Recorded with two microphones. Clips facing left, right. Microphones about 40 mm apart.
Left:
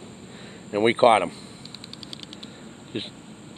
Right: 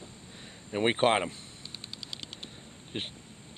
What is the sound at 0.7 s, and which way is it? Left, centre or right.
Speech, centre.